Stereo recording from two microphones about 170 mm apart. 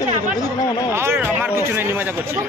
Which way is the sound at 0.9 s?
15° right (ahead or behind).